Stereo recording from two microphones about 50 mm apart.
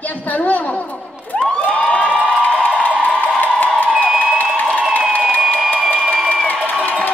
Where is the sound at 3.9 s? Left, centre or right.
Centre.